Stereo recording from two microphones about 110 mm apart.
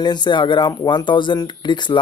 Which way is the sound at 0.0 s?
40° left (ahead or behind).